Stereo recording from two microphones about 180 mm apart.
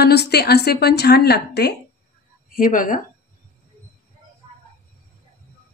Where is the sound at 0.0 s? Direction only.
65° left (ahead or behind).